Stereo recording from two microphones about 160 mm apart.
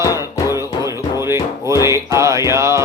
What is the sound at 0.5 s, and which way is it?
Music, 20° right (ahead or behind).